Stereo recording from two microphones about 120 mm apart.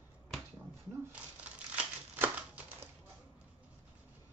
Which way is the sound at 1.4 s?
10° right (ahead or behind).